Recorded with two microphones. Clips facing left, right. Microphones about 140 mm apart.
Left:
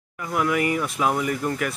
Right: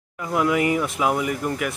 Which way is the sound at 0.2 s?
20° right (ahead or behind).